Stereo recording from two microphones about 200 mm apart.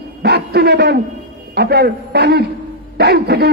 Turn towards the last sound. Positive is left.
turn(degrees=-55)  # may be behind; listen again after turning